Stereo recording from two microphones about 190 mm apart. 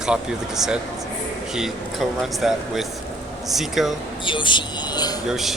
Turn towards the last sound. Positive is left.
turn(degrees=0)  # may be behind; listen again after turning